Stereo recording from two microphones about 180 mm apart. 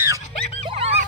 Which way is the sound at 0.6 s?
30° right (ahead or behind).